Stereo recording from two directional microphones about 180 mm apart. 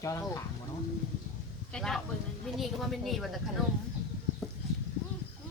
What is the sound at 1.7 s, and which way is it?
Speech, centre (ahead or behind).